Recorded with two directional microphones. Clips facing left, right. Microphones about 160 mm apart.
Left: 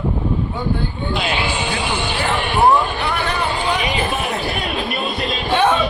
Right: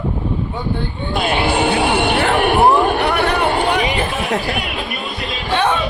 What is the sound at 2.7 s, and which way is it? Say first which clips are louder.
Chatter: right 5 dB; 55° right (ahead or behind).